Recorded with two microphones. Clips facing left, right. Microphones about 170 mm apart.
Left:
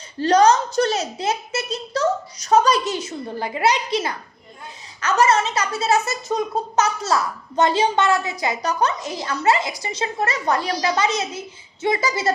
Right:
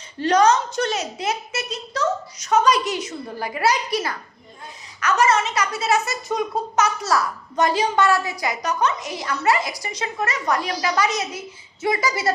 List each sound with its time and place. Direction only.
0.2 s a child's voice: 35° left (ahead or behind)